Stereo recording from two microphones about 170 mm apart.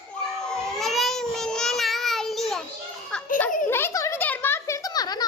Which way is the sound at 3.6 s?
15° left (ahead or behind).